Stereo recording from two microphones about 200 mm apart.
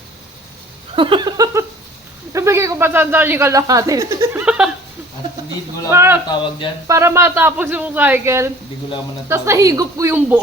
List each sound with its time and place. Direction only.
0.9 s a sound: 25° right (ahead or behind)
2.3 s a man's voice: 15° right (ahead or behind)
5.9 s speech: 15° right (ahead or behind)
6.2 s speech: 25° left (ahead or behind)
6.8 s speech: 15° right (ahead or behind)